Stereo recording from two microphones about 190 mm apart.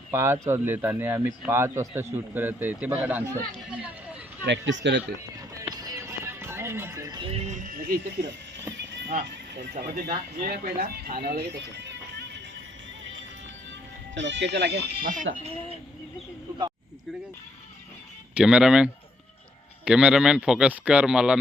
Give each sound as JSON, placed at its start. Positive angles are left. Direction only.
{"t": 0.1, "sound": "speech", "side_deg": -15}
{"t": 4.4, "sound": "speech", "side_deg": -75}
{"t": 5.6, "sound": "music", "side_deg": -20}
{"t": 7.3, "sound": "speech", "side_deg": -40}
{"t": 9.7, "sound": "speech", "side_deg": -40}
{"t": 10.1, "sound": "speech", "side_deg": -55}
{"t": 14.2, "sound": "speech", "side_deg": -65}
{"t": 18.3, "sound": "speech", "side_deg": -5}